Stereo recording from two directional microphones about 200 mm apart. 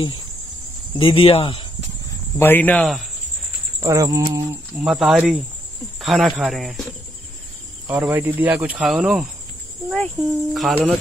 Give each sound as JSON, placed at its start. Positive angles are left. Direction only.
{"t": 0.9, "sound": "cricket", "side_deg": 25}
{"t": 2.3, "sound": "speech", "side_deg": 10}
{"t": 3.8, "sound": "speech", "side_deg": -15}
{"t": 4.8, "sound": "speech", "side_deg": 0}
{"t": 7.8, "sound": "speech", "side_deg": -10}